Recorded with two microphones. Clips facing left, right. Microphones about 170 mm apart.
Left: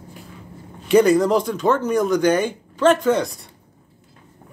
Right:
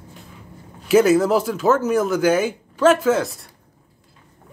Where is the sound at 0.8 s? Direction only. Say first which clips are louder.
Even; 5° right (ahead or behind).